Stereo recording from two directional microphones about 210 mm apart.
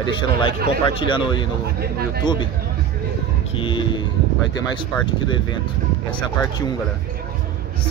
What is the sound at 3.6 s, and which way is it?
Music, 25° left (ahead or behind).